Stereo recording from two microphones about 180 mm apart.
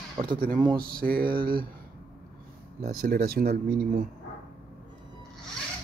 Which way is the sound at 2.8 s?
55° right (ahead or behind).